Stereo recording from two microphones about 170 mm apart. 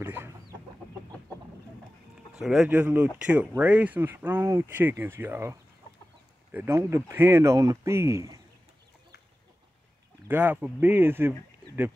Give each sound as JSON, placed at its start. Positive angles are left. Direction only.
{"t": 0.0, "sound": "chicken", "side_deg": -10}
{"t": 2.3, "sound": "speech", "side_deg": -5}
{"t": 10.2, "sound": "speech", "side_deg": -10}